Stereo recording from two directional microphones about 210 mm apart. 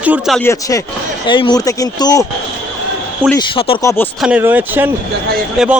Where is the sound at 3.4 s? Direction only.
25° left (ahead or behind).